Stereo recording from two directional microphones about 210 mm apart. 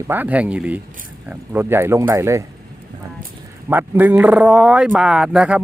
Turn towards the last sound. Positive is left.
turn(degrees=-5)  # may be behind; listen again after turning